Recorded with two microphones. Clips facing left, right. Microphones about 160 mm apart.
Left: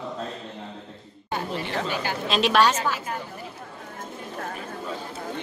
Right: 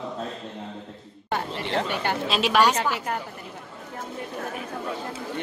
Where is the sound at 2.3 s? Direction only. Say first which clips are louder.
Left 1 dB; 10° right (ahead or behind).